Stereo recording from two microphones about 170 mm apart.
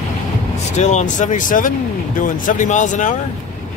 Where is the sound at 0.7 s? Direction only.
45° left (ahead or behind).